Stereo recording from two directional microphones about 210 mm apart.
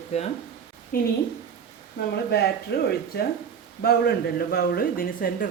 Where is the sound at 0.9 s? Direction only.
45° left (ahead or behind).